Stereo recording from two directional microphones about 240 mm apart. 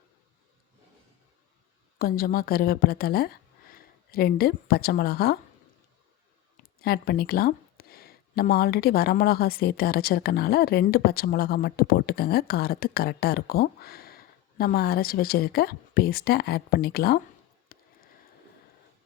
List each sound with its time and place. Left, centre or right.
2.0 s a woman's voice: left
6.6 s speech: left
17.7 s sniff: left